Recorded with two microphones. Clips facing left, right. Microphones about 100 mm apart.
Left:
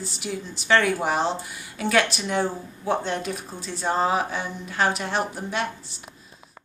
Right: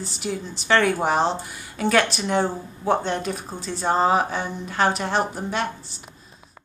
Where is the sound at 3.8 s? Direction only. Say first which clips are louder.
Right 3 dB; 35° right (ahead or behind).